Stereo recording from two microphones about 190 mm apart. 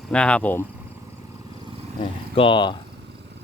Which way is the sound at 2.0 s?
25° left (ahead or behind).